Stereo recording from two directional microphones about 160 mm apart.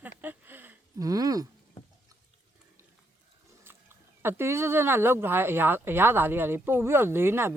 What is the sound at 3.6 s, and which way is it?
Speech, 15° right (ahead or behind).